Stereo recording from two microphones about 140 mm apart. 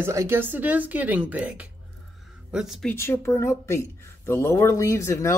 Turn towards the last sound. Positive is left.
turn(degrees=20)  # may be behind; listen again after turning